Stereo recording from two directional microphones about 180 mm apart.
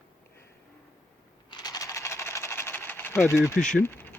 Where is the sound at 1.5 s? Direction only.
20° left (ahead or behind).